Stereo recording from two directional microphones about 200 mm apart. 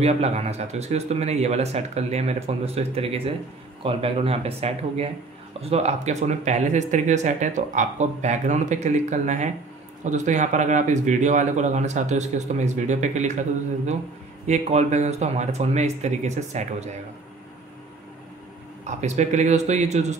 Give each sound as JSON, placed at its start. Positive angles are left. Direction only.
{"t": 0.0, "sound": "speech", "side_deg": -30}
{"t": 14.4, "sound": "speech", "side_deg": -35}
{"t": 18.9, "sound": "speech", "side_deg": -35}